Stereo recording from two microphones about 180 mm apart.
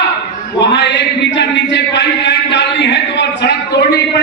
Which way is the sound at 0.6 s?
75° left (ahead or behind).